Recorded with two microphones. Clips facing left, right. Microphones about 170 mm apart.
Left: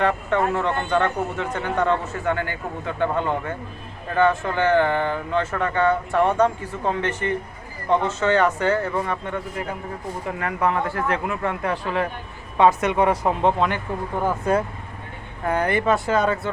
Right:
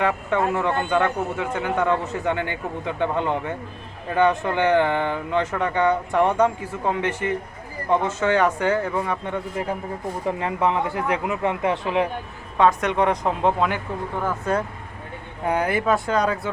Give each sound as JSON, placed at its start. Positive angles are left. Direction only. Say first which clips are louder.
{"t": 0.0, "sound": "a man's voice", "louder": "left 1 dB", "side_deg": -10}
{"t": 12.5, "sound": "speech", "louder": "left 1 dB", "side_deg": 5}
{"t": 14.2, "sound": "speech", "louder": "left 3 dB", "side_deg": 15}
{"t": 15.4, "sound": "speech", "louder": "left 1 dB", "side_deg": -10}